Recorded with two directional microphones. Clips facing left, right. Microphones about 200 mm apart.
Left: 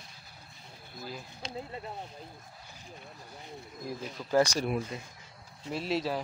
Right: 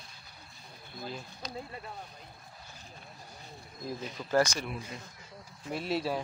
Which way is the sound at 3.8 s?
10° left (ahead or behind).